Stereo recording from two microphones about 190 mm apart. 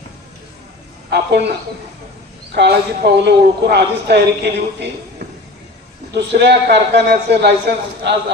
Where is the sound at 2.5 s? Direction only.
60° right (ahead or behind).